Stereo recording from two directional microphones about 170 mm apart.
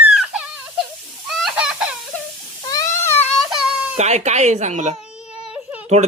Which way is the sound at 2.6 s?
20° left (ahead or behind).